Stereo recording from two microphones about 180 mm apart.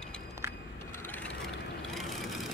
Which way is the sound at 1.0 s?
10° left (ahead or behind).